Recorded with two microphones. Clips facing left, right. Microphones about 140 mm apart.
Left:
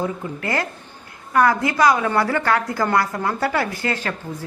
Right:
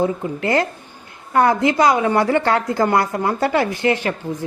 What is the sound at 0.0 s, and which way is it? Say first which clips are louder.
Speech: right 5 dB; 25° right (ahead or behind).